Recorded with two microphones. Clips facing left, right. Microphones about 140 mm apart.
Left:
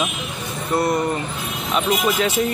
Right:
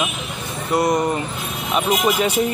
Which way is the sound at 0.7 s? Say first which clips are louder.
Right 2 dB; 15° right (ahead or behind).